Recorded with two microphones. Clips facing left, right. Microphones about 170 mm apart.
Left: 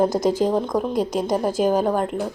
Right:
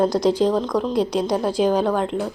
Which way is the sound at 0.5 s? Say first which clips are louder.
Right 1 dB; 15° left (ahead or behind).